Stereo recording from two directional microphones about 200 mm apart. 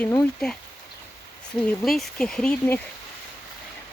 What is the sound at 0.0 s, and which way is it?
Speech, 5° left (ahead or behind).